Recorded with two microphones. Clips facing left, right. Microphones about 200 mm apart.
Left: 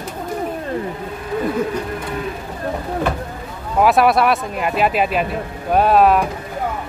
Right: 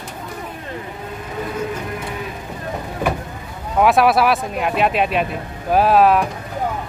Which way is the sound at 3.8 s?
Centre (ahead or behind).